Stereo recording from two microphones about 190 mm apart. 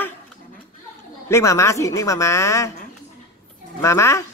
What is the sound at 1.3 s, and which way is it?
A woman's voice, 15° left (ahead or behind).